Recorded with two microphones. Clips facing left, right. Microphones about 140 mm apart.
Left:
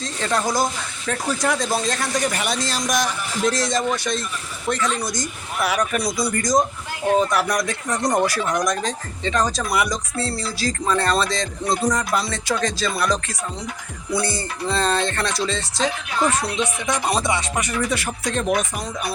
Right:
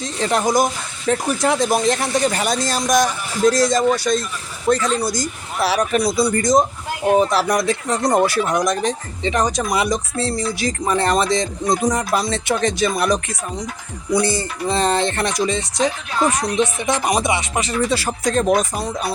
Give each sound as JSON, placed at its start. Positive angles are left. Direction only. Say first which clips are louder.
{"t": 0.0, "sound": "speech", "louder": "right 4 dB", "side_deg": -20}